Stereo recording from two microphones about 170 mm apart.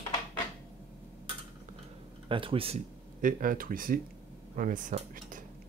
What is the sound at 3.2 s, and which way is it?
Speech, 55° right (ahead or behind).